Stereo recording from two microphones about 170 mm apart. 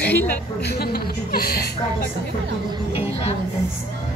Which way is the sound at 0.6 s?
70° left (ahead or behind).